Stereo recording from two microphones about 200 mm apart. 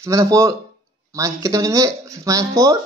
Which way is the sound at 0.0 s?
15° right (ahead or behind).